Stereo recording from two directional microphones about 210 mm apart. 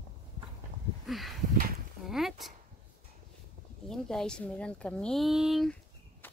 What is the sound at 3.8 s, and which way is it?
Speech, centre (ahead or behind).